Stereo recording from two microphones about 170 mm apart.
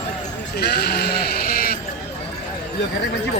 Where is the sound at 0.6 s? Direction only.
70° left (ahead or behind).